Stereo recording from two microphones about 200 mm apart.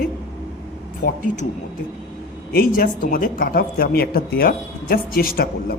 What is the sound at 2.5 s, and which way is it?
Speech, 50° left (ahead or behind).